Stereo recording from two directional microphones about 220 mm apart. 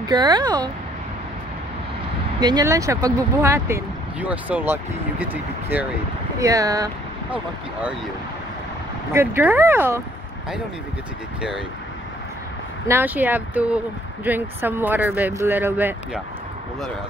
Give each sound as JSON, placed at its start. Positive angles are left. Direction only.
{"t": 0.0, "sound": "speech", "side_deg": -20}
{"t": 2.4, "sound": "speech", "side_deg": -15}
{"t": 9.1, "sound": "speech", "side_deg": -10}
{"t": 12.8, "sound": "speech", "side_deg": -10}